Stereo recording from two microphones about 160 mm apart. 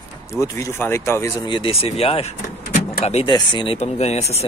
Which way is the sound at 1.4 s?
30° left (ahead or behind).